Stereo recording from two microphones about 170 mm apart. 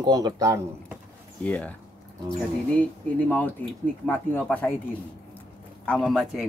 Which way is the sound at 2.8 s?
10° left (ahead or behind).